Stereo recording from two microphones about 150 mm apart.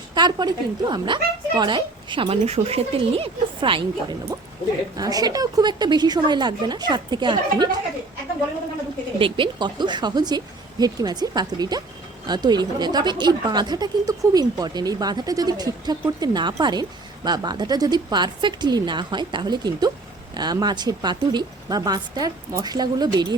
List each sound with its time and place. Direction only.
0.1 s a woman's voice: 30° right (ahead or behind)
4.9 s a woman's voice: 25° right (ahead or behind)
9.1 s a woman's voice: 35° right (ahead or behind)